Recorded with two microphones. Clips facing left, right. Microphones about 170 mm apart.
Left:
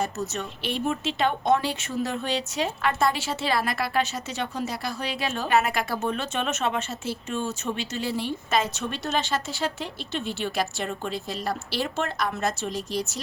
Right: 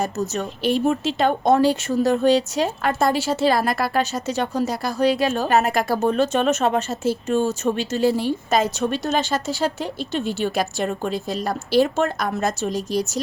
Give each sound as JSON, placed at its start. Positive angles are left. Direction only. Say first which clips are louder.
{"t": 0.0, "sound": "speech", "louder": "right 5 dB", "side_deg": -40}